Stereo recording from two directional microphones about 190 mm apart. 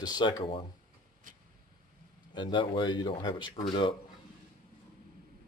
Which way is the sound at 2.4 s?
25° left (ahead or behind).